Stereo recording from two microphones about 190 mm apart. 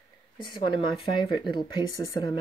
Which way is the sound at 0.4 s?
25° left (ahead or behind).